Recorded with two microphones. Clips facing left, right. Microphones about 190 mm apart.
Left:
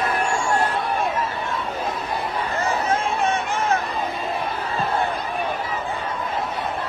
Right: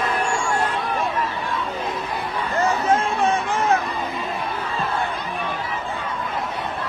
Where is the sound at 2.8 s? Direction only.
35° right (ahead or behind).